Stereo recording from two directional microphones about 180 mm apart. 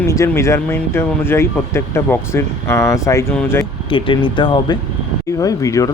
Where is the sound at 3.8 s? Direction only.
30° left (ahead or behind).